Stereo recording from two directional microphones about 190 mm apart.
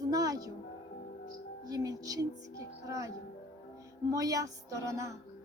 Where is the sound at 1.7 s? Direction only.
20° right (ahead or behind).